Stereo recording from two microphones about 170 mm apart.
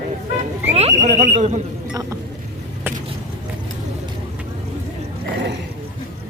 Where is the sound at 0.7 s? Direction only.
40° right (ahead or behind).